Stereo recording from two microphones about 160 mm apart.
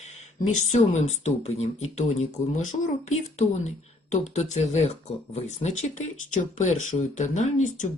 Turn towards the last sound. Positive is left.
turn(degrees=50)  # may be behind; listen again after turning